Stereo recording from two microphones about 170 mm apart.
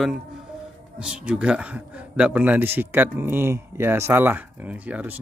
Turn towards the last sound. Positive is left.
turn(degrees=-10)  # may be behind; listen again after turning